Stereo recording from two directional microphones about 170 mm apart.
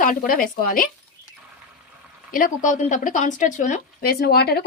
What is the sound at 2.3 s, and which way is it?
Speech, 50° left (ahead or behind).